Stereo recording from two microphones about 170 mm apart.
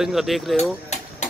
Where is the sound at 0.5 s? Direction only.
40° left (ahead or behind).